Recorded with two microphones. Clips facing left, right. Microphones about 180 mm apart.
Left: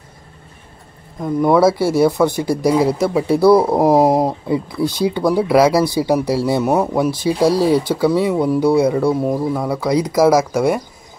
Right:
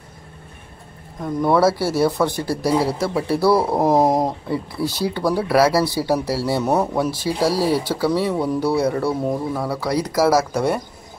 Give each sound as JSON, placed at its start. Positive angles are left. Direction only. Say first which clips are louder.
{"t": 1.2, "sound": "speech", "louder": "left 4 dB", "side_deg": 10}